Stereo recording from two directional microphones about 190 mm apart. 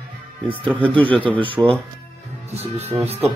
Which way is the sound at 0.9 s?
25° right (ahead or behind).